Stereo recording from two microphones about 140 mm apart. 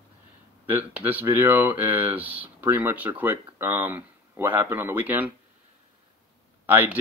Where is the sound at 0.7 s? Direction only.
15° right (ahead or behind).